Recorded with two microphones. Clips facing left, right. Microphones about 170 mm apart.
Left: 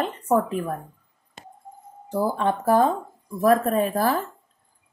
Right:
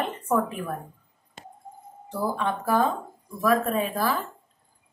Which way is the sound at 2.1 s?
45° left (ahead or behind).